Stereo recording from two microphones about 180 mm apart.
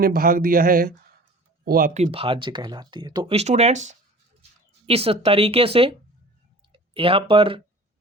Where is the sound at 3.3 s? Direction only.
35° right (ahead or behind).